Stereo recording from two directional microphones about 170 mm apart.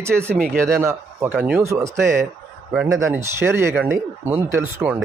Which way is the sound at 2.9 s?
15° right (ahead or behind).